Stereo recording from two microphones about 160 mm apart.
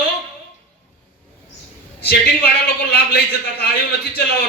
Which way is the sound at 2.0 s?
90° left.